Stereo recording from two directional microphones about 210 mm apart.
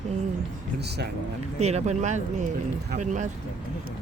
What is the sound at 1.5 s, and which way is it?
Speech, 30° right (ahead or behind).